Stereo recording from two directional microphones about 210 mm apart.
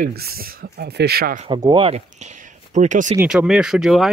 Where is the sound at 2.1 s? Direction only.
35° right (ahead or behind).